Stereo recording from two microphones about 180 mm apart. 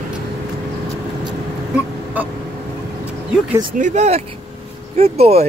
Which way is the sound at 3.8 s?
40° right (ahead or behind).